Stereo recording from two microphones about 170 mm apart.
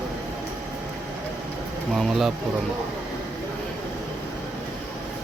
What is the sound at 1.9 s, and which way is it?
Speech, centre (ahead or behind).